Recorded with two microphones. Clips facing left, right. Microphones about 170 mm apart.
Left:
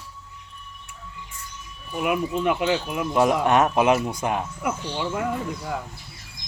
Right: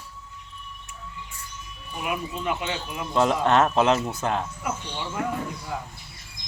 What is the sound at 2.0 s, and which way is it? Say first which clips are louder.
Speech: left 6 dB; 60° left (ahead or behind).